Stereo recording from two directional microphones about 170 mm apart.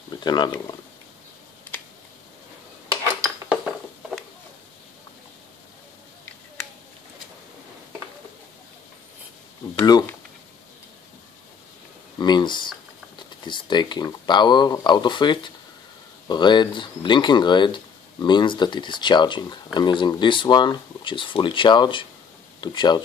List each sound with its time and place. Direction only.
0.1 s speech: 25° left (ahead or behind)
2.9 s dishes: 20° right (ahead or behind)
3.3 s dishes: 5° right (ahead or behind)
12.2 s speech: 25° left (ahead or behind)